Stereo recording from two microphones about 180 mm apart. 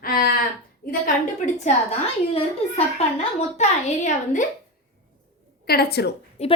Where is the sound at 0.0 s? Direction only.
55° left (ahead or behind).